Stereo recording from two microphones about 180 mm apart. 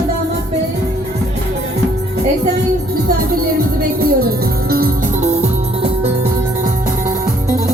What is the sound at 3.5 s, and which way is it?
Music, 55° right (ahead or behind).